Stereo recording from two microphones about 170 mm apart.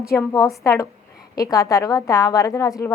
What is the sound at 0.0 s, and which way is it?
A woman's voice, 15° left (ahead or behind).